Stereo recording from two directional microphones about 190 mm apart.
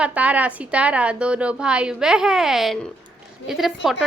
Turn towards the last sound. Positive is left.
turn(degrees=0)  # may be behind; listen again after turning